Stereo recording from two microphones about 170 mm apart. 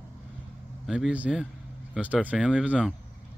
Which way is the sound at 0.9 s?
5° right (ahead or behind).